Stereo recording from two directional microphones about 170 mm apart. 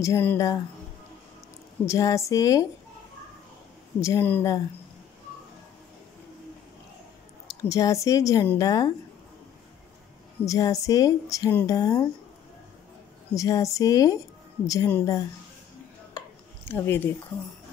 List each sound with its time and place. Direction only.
0.0 s speech: 15° left (ahead or behind)
1.9 s speech: 20° left (ahead or behind)
4.0 s speech: 15° left (ahead or behind)
7.6 s speech: 20° left (ahead or behind)
10.4 s speech: 20° left (ahead or behind)
13.3 s speech: 20° left (ahead or behind)
16.6 s speech: 10° left (ahead or behind)